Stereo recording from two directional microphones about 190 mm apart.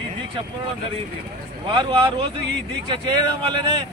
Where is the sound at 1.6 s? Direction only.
25° right (ahead or behind).